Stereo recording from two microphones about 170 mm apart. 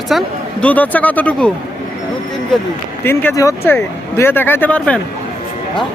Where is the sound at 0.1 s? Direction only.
5° left (ahead or behind).